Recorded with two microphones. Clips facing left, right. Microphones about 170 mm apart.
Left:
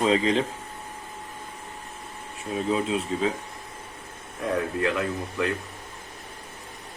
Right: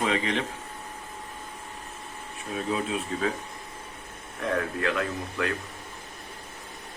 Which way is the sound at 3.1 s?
20° left (ahead or behind).